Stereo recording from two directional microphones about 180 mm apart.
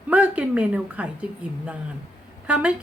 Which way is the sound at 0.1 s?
10° right (ahead or behind).